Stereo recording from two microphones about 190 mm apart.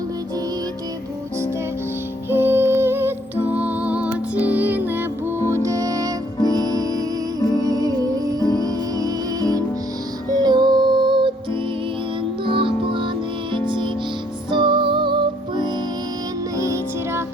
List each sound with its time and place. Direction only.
2.3 s music: 10° right (ahead or behind)
12.5 s music: 25° right (ahead or behind)